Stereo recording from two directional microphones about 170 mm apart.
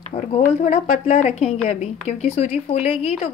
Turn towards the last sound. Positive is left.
turn(degrees=35)  # may be behind; listen again after turning